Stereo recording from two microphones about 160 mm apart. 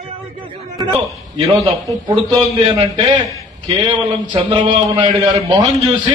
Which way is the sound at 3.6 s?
30° right (ahead or behind).